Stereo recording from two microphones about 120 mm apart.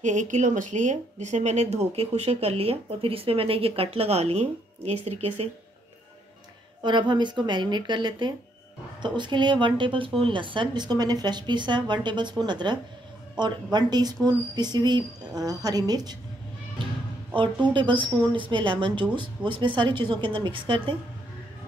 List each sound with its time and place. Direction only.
0.0 s speech: 90° right; by 5.5 s 60° right (ahead or behind)
6.8 s speech: 40° right (ahead or behind)
17.4 s a woman's voice: 40° right (ahead or behind)